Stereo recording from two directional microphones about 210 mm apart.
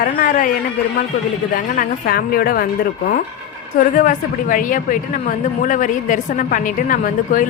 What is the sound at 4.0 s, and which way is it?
A woman's voice, 40° left (ahead or behind).